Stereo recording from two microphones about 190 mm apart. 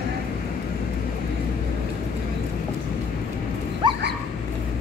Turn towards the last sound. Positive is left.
turn(degrees=-25)  # may be behind; listen again after turning